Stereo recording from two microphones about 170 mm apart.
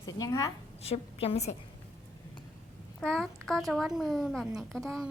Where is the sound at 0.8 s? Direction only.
35° left (ahead or behind).